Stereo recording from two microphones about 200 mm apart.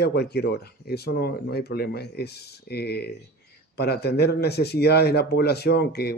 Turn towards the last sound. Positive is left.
turn(degrees=55)  # may be behind; listen again after turning